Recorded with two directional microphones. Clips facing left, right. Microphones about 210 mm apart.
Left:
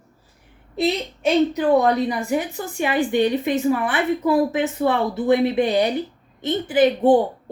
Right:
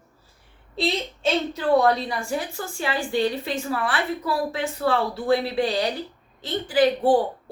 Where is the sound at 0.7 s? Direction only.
20° left (ahead or behind).